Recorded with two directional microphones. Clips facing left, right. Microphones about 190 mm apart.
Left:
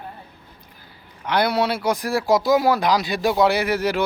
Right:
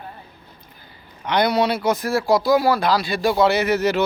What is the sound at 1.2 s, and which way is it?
Speech, 5° left (ahead or behind).